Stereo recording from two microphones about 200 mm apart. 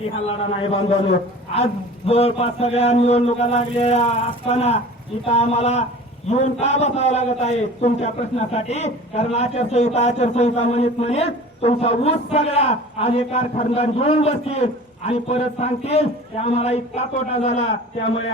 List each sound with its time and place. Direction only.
0.3 s a man's voice: 30° left (ahead or behind)